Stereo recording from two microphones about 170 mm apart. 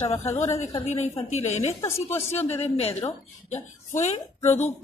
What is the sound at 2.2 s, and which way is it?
A woman's voice, 40° left (ahead or behind).